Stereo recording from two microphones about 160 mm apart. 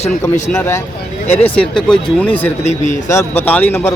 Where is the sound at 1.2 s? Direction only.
40° left (ahead or behind).